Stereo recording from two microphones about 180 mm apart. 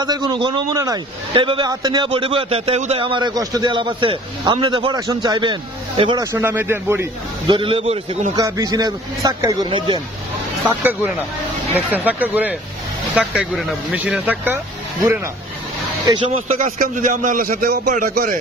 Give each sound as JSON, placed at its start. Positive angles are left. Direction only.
{"t": 0.0, "sound": "a man's voice", "side_deg": -25}
{"t": 6.3, "sound": "speech", "side_deg": -10}
{"t": 7.4, "sound": "a man's voice", "side_deg": -25}
{"t": 8.4, "sound": "a man's voice", "side_deg": -20}
{"t": 10.7, "sound": "speech", "side_deg": -10}
{"t": 16.5, "sound": "a man's voice", "side_deg": -45}